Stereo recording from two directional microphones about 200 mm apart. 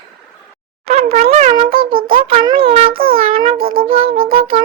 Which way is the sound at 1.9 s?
45° right (ahead or behind).